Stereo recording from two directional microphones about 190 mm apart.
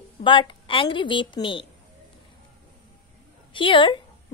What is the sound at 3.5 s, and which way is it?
Speech, 25° left (ahead or behind).